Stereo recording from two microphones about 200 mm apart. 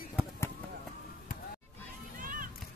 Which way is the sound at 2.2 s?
45° right (ahead or behind).